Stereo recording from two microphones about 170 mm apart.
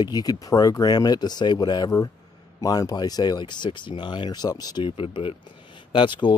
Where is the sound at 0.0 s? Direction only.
25° left (ahead or behind).